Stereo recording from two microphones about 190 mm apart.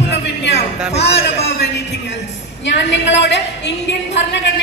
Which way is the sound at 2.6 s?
70° left (ahead or behind).